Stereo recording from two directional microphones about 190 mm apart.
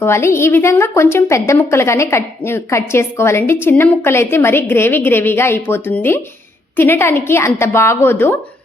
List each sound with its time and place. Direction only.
0.0 s a woman's voice: 15° left (ahead or behind)